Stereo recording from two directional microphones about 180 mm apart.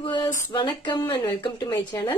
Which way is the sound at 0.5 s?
25° left (ahead or behind).